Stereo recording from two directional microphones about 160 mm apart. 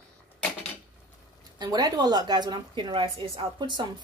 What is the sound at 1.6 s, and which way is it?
A woman's voice, 25° right (ahead or behind).